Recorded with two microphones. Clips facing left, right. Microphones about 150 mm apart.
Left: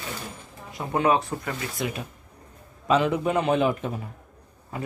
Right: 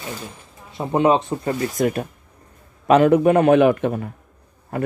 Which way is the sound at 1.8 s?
50° right (ahead or behind).